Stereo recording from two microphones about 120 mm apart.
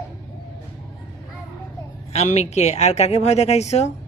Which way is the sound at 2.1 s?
70° left (ahead or behind).